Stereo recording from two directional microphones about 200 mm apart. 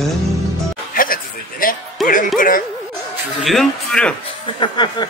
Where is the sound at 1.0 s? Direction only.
45° left (ahead or behind).